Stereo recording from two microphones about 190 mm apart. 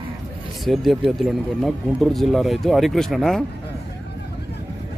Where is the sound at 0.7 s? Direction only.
Centre (ahead or behind).